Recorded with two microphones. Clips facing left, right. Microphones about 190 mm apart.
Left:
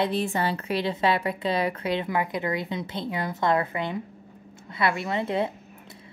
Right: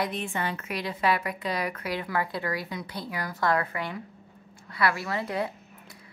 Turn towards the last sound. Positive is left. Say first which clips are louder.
# left 4 dB
turn(degrees=25)  # may be behind; listen again after turning